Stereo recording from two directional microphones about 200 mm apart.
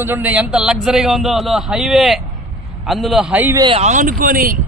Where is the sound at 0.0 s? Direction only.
10° right (ahead or behind).